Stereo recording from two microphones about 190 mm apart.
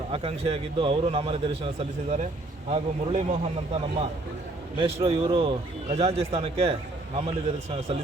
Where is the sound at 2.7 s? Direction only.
35° right (ahead or behind).